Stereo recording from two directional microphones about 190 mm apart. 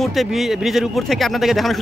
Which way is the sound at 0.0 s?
Centre (ahead or behind).